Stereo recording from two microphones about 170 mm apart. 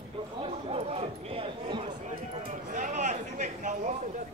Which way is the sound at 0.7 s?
35° right (ahead or behind).